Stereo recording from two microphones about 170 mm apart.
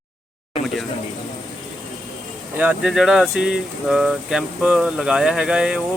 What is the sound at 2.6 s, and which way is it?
Speech, 5° right (ahead or behind).